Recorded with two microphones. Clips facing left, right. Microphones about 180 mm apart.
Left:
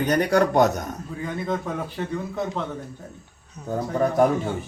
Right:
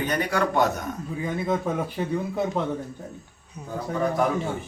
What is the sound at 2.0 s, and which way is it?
Speech, 10° right (ahead or behind).